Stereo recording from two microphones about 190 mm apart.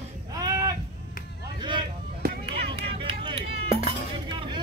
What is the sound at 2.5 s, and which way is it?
Vehicle, 30° right (ahead or behind).